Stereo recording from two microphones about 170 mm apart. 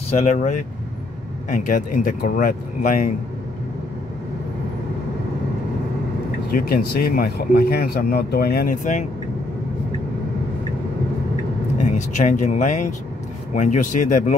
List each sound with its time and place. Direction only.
0.1 s speech: 45° left (ahead or behind)
6.5 s speech: 60° left (ahead or behind)
11.8 s speech: 45° left (ahead or behind)